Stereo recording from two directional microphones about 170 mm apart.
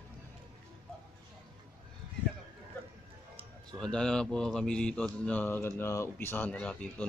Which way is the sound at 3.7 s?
5° left (ahead or behind).